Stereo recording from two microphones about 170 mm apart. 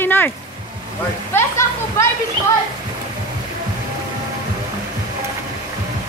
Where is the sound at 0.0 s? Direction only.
10° left (ahead or behind).